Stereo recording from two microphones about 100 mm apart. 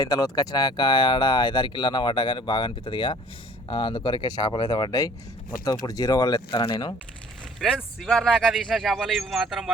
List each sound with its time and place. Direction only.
0.0 s speech: 40° left (ahead or behind)
6.6 s speech: 55° left (ahead or behind)
8.0 s speech: 5° left (ahead or behind)